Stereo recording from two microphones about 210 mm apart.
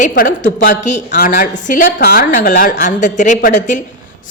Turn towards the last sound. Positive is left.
turn(degrees=35)  # may be behind; listen again after turning